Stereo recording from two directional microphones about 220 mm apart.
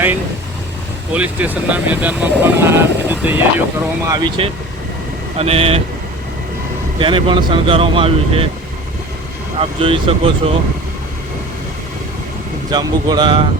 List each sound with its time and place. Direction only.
1.1 s speech: 5° right (ahead or behind); by 5.8 s 25° right (ahead or behind)
7.0 s speech: 20° right (ahead or behind)
9.6 s speech: 25° right (ahead or behind)
12.7 s speech: 20° right (ahead or behind)